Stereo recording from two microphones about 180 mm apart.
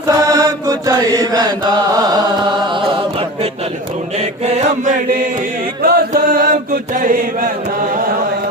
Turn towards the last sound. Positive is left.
turn(degrees=-50)  # may be behind; listen again after turning